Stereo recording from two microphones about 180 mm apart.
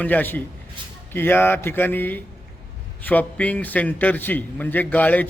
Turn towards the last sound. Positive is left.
turn(degrees=10)  # may be behind; listen again after turning